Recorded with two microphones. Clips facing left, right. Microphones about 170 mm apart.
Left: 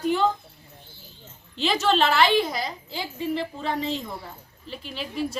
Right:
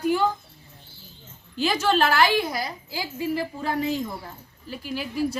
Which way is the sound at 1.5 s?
Centre (ahead or behind).